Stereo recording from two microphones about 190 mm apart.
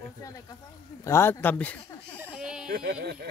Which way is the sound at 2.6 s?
55° right (ahead or behind).